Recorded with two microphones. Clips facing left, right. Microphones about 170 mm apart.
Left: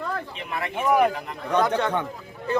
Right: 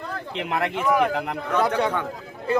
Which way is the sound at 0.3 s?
80° right.